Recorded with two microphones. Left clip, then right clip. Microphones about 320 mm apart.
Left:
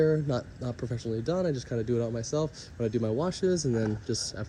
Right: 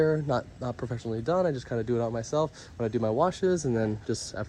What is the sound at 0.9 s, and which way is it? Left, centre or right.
Speech, right.